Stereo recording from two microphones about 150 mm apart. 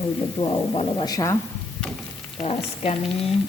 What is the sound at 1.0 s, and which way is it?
Speech, 25° left (ahead or behind).